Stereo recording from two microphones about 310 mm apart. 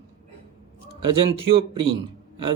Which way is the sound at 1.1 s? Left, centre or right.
Centre.